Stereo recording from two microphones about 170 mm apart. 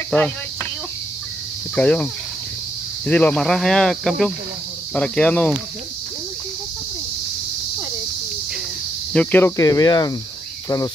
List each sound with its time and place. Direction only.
0.1 s speech: 10° left (ahead or behind)
1.8 s speech: 5° left (ahead or behind)
3.1 s speech: 10° left (ahead or behind)
9.1 s speech: 10° left (ahead or behind)
9.6 s speech: 25° left (ahead or behind)